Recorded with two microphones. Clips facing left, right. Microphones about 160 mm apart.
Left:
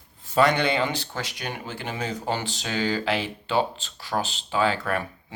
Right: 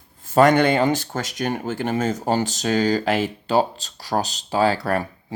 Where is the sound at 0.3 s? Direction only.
45° right (ahead or behind).